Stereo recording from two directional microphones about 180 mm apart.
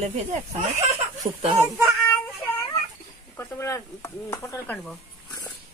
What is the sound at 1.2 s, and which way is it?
Speech, 20° right (ahead or behind).